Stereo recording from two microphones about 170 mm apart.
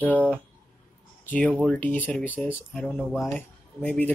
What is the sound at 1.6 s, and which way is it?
Speech, 10° left (ahead or behind).